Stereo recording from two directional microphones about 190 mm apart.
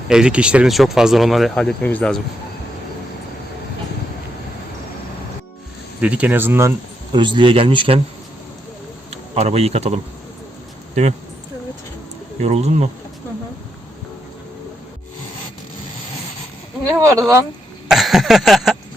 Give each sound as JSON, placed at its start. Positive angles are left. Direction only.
{"t": 0.1, "sound": "speech", "side_deg": -5}
{"t": 6.0, "sound": "speech", "side_deg": -5}
{"t": 9.0, "sound": "speech", "side_deg": -35}
{"t": 12.4, "sound": "speech", "side_deg": -35}
{"t": 17.0, "sound": "speech", "side_deg": -15}
{"t": 17.8, "sound": "a sound", "side_deg": 0}